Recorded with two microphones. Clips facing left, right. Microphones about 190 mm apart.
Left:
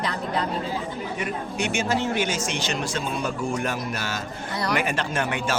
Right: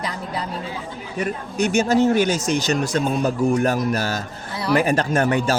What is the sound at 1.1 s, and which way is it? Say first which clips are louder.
Speech: right 8 dB; 40° right (ahead or behind).